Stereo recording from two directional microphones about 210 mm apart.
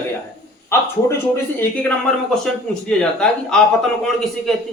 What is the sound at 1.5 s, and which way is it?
Speech, 5° left (ahead or behind).